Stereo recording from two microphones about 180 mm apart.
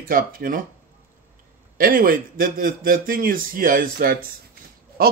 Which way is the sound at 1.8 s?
50° right (ahead or behind).